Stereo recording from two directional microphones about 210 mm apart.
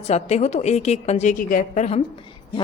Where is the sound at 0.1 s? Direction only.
30° left (ahead or behind).